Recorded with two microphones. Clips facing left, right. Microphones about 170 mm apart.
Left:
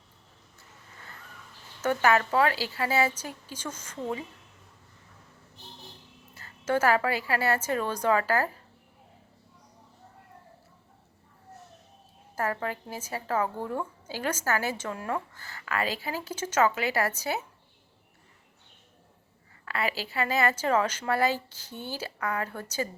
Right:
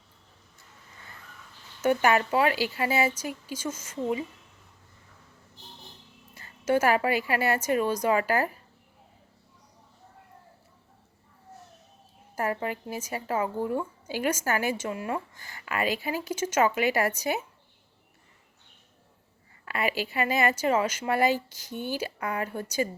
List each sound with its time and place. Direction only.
1.8 s a woman's voice: 15° right (ahead or behind)
6.3 s a woman's voice: 15° right (ahead or behind)
12.4 s a woman's voice: 15° right (ahead or behind)
19.6 s a woman's voice: 15° right (ahead or behind)